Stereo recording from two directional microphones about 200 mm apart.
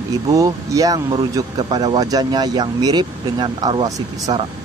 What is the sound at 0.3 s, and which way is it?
Speech, 15° right (ahead or behind).